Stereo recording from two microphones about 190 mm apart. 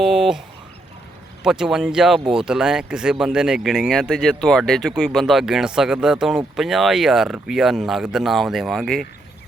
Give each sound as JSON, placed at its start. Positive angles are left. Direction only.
{"t": 0.0, "sound": "speech", "side_deg": -5}
{"t": 1.5, "sound": "speech", "side_deg": -5}